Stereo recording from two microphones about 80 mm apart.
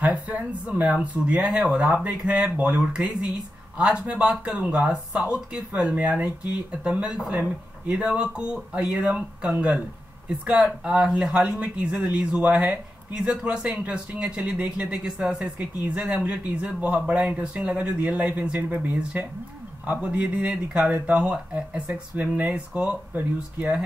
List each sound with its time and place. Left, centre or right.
0.0 s speech: centre